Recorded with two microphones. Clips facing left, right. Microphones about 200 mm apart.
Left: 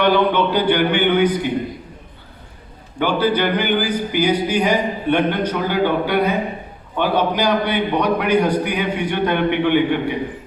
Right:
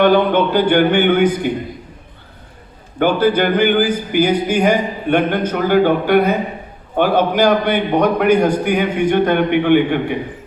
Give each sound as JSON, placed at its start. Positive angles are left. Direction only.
{"t": 0.0, "sound": "speech", "side_deg": -50}
{"t": 3.0, "sound": "speech", "side_deg": -50}